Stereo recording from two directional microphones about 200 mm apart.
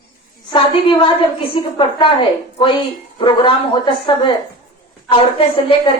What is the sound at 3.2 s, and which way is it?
Speech, 25° left (ahead or behind).